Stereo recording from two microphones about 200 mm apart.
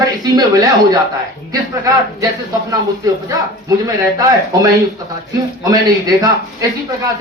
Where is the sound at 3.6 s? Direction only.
15° right (ahead or behind).